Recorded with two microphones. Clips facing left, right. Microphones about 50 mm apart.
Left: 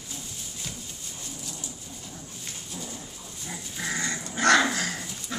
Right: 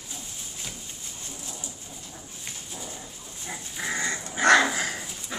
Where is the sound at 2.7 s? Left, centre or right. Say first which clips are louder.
Left 3 dB; centre.